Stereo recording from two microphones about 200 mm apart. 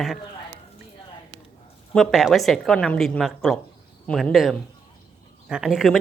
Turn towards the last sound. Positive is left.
turn(degrees=0)  # may be behind; listen again after turning